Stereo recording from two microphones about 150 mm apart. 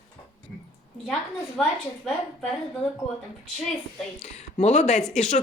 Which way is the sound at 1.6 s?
5° left (ahead or behind).